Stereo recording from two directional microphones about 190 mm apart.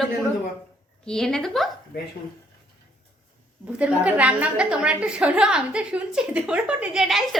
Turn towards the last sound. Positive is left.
turn(degrees=0)  # may be behind; listen again after turning